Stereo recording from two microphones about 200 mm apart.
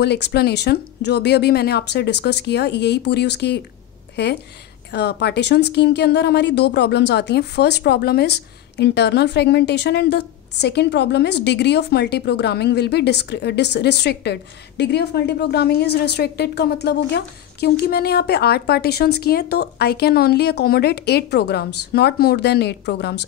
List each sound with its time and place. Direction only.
0.0 s a woman's voice: 55° left (ahead or behind)
4.9 s a woman's voice: 55° left (ahead or behind)